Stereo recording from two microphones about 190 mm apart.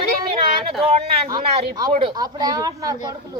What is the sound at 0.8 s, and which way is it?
A woman's voice, 30° right (ahead or behind).